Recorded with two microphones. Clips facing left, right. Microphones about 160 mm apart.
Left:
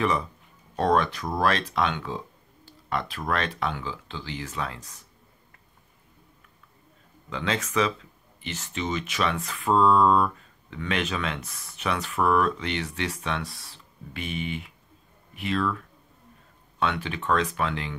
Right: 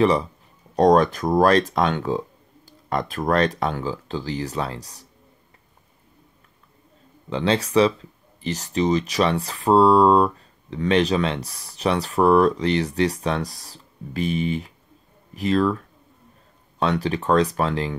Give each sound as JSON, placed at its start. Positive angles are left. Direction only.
{"t": 0.0, "sound": "speech", "side_deg": -30}
{"t": 7.2, "sound": "speech", "side_deg": -30}
{"t": 16.8, "sound": "speech", "side_deg": -40}